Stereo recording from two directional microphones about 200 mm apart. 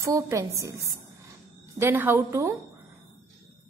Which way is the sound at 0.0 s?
15° right (ahead or behind).